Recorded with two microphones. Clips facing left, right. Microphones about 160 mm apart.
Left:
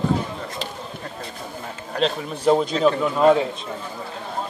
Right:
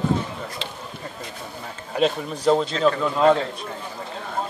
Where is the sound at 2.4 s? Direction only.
15° left (ahead or behind).